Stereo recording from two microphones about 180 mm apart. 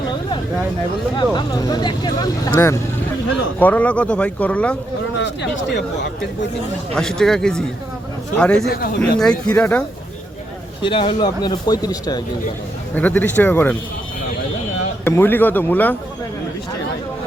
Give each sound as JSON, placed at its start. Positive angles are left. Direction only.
{"t": 1.1, "sound": "speech", "side_deg": 25}
{"t": 2.6, "sound": "speech", "side_deg": 15}
{"t": 5.1, "sound": "speech", "side_deg": 85}
{"t": 6.9, "sound": "a man's voice", "side_deg": 5}
{"t": 10.8, "sound": "speech", "side_deg": 30}
{"t": 13.0, "sound": "speech", "side_deg": 10}
{"t": 15.0, "sound": "speech", "side_deg": 10}